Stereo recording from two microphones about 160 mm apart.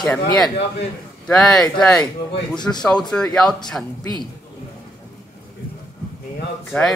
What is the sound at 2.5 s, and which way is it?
Speech, 25° left (ahead or behind).